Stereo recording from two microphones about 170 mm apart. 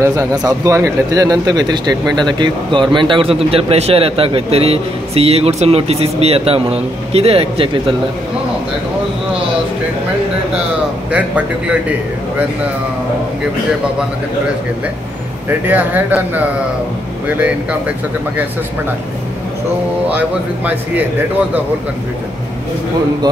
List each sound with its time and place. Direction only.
0.0 s speech: 20° right (ahead or behind)
11.1 s speech: 5° right (ahead or behind)
15.6 s speech: 10° right (ahead or behind)
20.1 s speech: 10° right (ahead or behind)